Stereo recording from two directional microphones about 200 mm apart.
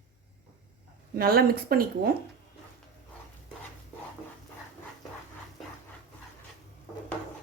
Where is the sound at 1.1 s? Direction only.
50° right (ahead or behind).